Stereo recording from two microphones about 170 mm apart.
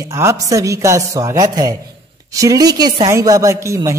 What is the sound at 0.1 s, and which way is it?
Mantra, 15° right (ahead or behind).